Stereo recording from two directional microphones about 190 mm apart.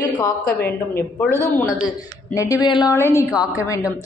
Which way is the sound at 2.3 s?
20° left (ahead or behind).